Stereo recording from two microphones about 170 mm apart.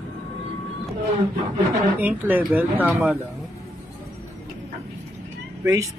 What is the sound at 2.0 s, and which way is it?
Speech, 10° right (ahead or behind).